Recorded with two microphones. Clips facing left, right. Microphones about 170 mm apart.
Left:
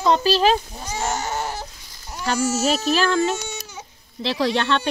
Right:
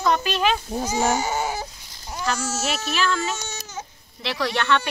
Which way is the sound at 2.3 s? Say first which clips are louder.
Left 7 dB; 15° left (ahead or behind).